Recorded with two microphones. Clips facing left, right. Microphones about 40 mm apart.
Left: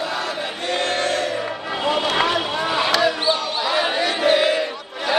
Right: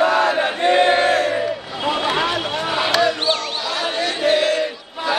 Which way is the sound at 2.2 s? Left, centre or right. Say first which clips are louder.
Left 1 dB; centre.